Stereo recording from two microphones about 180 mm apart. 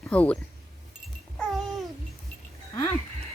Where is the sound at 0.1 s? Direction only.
5° left (ahead or behind).